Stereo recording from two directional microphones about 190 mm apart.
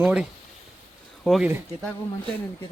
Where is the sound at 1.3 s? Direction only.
Centre (ahead or behind).